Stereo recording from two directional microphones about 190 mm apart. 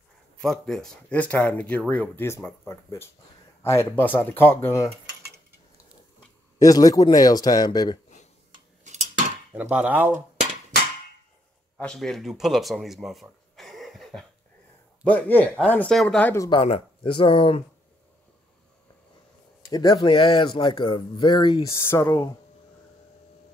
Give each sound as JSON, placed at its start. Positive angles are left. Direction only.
{"t": 0.4, "sound": "speech", "side_deg": 0}
{"t": 6.6, "sound": "speech", "side_deg": 20}
{"t": 9.5, "sound": "speech", "side_deg": -5}
{"t": 11.8, "sound": "a man's voice", "side_deg": 5}
{"t": 16.4, "sound": "speech", "side_deg": 30}
{"t": 19.7, "sound": "speech", "side_deg": 25}